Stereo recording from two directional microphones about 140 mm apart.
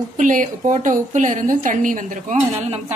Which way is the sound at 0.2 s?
65° right (ahead or behind).